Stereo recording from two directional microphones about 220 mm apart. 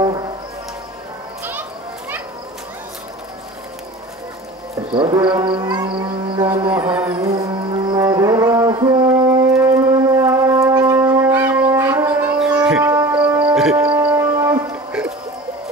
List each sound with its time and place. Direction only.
1.4 s children playing: 10° right (ahead or behind)
4.9 s a sound: 20° right (ahead or behind)
6.7 s music: 5° right (ahead or behind)
9.5 s wind instrument: 10° right (ahead or behind)
13.7 s livestock: 10° right (ahead or behind)